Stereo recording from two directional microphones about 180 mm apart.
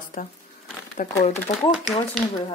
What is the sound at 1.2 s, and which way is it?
Speech, 35° left (ahead or behind).